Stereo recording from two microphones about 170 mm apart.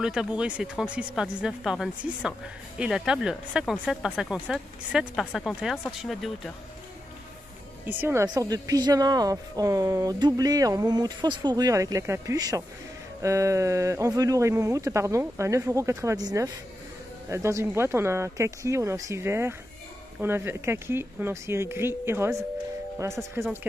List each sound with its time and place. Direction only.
0.0 s speech: 5° right (ahead or behind)
7.8 s speech: 15° right (ahead or behind)